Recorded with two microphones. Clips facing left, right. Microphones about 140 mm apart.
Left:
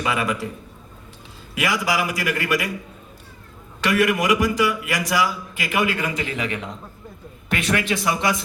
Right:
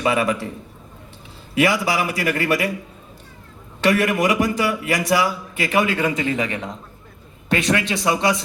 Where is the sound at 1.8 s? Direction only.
30° right (ahead or behind).